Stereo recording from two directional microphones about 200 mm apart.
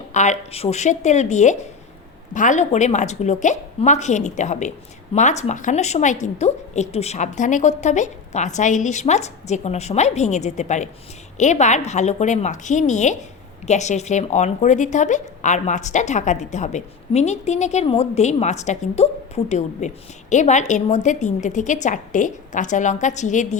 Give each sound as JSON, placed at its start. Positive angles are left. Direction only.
{"t": 0.1, "sound": "a woman's voice", "side_deg": 35}